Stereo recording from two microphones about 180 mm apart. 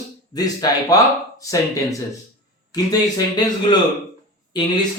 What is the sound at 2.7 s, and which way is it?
Speech, 20° left (ahead or behind).